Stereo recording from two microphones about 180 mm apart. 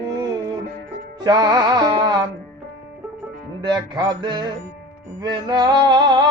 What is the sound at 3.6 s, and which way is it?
Music, 25° right (ahead or behind).